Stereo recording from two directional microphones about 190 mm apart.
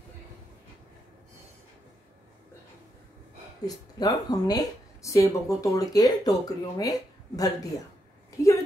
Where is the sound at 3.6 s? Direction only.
20° left (ahead or behind).